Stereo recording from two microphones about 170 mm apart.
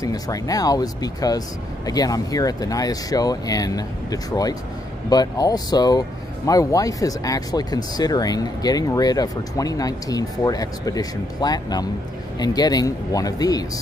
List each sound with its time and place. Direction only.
0.0 s speech: 20° left (ahead or behind)